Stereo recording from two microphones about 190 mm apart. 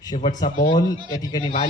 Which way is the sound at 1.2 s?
20° left (ahead or behind).